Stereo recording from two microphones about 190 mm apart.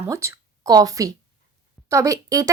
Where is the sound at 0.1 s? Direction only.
15° right (ahead or behind).